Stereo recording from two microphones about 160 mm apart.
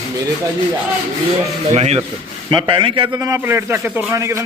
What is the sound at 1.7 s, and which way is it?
Speech, 40° right (ahead or behind).